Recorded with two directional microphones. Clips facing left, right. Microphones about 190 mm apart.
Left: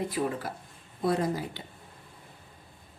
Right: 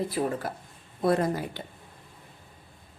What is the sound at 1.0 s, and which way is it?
Speech, 55° right (ahead or behind).